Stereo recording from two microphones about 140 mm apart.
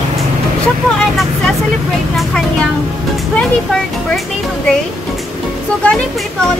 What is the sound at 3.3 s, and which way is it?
Speech, 5° left (ahead or behind).